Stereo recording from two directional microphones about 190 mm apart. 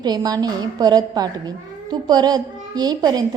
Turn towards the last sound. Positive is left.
turn(degrees=-20)  # may be behind; listen again after turning